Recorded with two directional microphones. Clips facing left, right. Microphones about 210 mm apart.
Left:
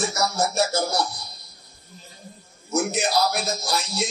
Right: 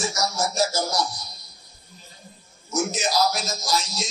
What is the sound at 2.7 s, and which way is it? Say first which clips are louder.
A man's voice: left 2 dB; 60° left (ahead or behind).